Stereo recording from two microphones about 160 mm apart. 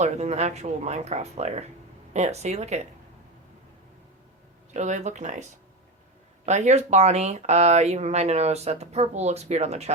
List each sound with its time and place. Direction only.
0.0 s speech: 45° right (ahead or behind)
4.7 s speech: 45° right (ahead or behind)